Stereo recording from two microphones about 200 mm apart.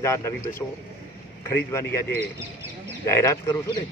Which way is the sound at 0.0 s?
15° left (ahead or behind).